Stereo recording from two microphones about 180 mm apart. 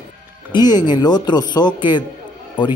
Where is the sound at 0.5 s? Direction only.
25° left (ahead or behind).